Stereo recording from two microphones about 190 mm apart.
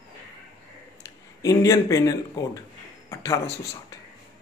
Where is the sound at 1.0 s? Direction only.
15° left (ahead or behind).